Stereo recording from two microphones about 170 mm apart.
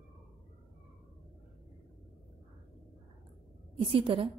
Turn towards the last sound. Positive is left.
turn(degrees=-30)  # may be behind; listen again after turning